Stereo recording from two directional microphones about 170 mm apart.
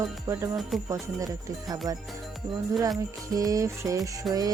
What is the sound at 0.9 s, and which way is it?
Speech, 20° right (ahead or behind).